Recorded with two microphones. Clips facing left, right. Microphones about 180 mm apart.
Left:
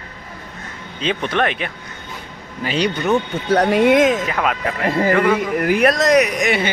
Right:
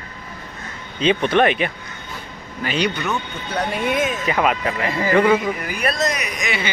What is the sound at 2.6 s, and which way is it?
Speech, 35° left (ahead or behind).